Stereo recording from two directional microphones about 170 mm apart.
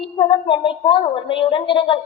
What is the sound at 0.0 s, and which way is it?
A woman's voice, 30° left (ahead or behind).